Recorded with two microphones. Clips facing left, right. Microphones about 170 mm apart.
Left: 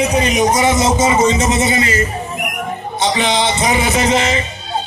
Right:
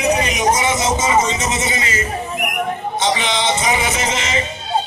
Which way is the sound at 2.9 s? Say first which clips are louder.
Left 4 dB; 35° left (ahead or behind).